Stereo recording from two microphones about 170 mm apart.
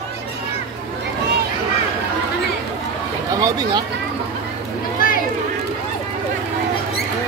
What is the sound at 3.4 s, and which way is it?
Speech, 20° right (ahead or behind).